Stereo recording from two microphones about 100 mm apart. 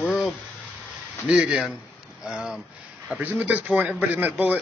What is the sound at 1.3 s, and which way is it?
A man's voice, 10° right (ahead or behind).